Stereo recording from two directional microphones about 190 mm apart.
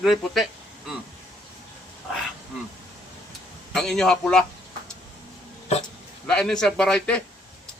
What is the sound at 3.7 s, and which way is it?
Speech, centre (ahead or behind).